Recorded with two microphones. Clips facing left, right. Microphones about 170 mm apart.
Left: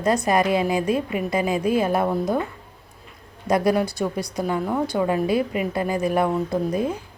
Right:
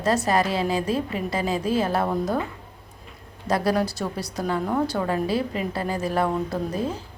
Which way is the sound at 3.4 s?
15° left (ahead or behind).